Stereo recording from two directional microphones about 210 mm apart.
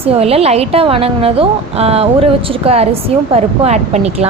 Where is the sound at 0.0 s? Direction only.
30° right (ahead or behind).